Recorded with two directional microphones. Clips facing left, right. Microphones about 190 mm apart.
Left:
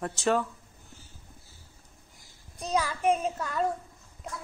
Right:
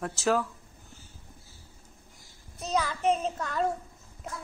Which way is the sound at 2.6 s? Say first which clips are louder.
Even; 10° left (ahead or behind).